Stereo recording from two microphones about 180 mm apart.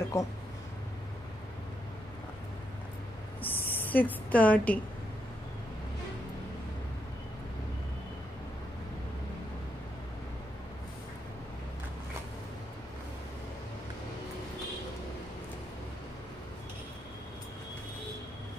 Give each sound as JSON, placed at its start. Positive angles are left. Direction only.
{"t": 0.1, "sound": "speech", "side_deg": 15}
{"t": 3.4, "sound": "speech", "side_deg": 10}